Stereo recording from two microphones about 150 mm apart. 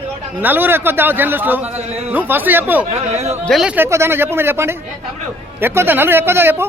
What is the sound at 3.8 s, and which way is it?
A man's voice, 15° right (ahead or behind).